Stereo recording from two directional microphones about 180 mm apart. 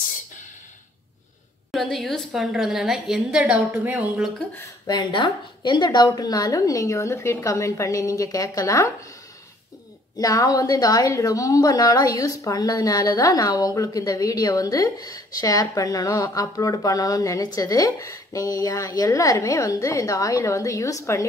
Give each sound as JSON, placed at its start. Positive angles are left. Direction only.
{"t": 1.7, "sound": "a woman's voice", "side_deg": 0}
{"t": 4.6, "sound": "a woman's voice", "side_deg": 20}
{"t": 10.1, "sound": "a woman's voice", "side_deg": 20}